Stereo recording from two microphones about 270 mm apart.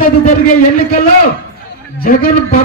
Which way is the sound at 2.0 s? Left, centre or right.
Left.